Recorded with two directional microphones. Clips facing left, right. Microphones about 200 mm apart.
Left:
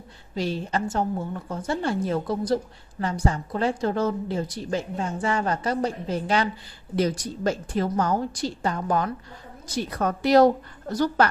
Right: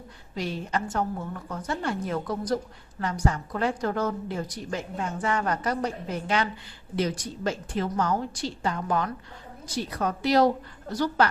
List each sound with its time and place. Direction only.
0.4 s a woman's voice: 30° left (ahead or behind)
9.8 s a woman's voice: 50° left (ahead or behind)